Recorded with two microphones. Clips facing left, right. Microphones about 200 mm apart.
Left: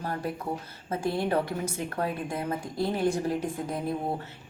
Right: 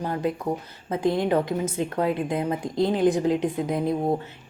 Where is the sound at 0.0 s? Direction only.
20° right (ahead or behind).